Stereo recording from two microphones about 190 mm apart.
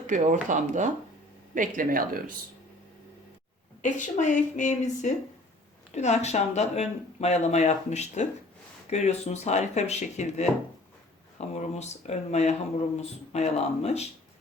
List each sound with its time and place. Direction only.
0.1 s speech: 40° right (ahead or behind)
3.8 s speech: 40° left (ahead or behind)